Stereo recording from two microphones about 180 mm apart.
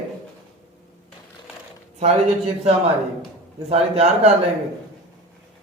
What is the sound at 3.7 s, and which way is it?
Speech, 35° right (ahead or behind).